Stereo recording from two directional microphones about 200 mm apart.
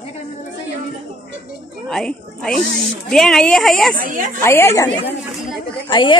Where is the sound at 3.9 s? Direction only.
45° right (ahead or behind).